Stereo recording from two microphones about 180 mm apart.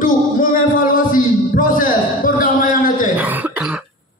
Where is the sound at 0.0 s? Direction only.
50° left (ahead or behind).